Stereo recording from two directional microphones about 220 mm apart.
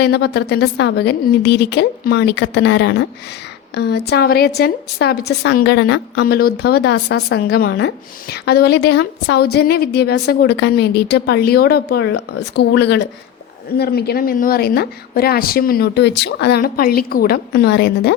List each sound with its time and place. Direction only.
0.0 s a woman's voice: 50° left (ahead or behind)